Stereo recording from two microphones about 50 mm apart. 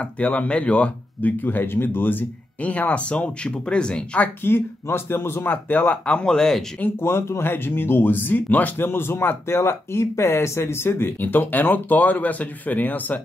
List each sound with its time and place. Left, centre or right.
0.0 s speech: left
1.4 s speech: left
4.4 s speech: left
6.0 s speech: centre
7.0 s speech: left
8.8 s speech: left
9.6 s speech: left